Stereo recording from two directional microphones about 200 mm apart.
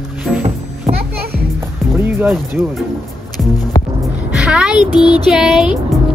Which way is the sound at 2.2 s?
10° right (ahead or behind).